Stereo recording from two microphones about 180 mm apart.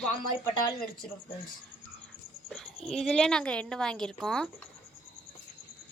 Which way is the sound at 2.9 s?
5° left (ahead or behind).